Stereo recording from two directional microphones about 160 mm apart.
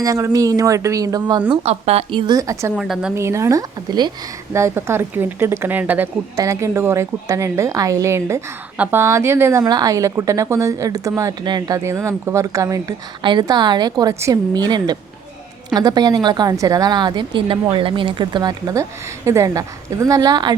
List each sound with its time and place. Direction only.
0.0 s a woman's voice: 20° right (ahead or behind)
1.5 s speech: 40° right (ahead or behind); by 2.7 s 20° right (ahead or behind)
2.7 s a woman's voice: 5° right (ahead or behind)
3.2 s a woman's voice: 15° right (ahead or behind)